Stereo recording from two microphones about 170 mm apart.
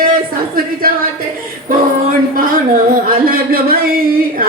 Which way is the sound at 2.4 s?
55° right (ahead or behind).